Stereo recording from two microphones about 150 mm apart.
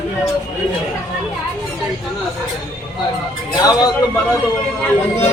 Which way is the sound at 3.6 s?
25° left (ahead or behind).